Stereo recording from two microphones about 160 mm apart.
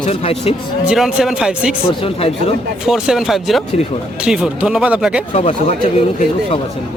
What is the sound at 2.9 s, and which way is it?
Speech, 5° right (ahead or behind).